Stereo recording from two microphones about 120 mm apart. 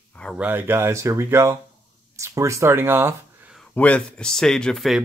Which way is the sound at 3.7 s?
10° left (ahead or behind).